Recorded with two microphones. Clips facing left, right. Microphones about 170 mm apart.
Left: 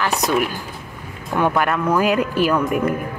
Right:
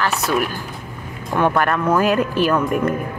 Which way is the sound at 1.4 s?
10° left (ahead or behind).